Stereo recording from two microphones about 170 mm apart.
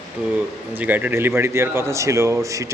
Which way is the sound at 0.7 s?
10° right (ahead or behind).